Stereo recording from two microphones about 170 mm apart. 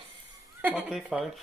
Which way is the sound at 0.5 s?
10° right (ahead or behind).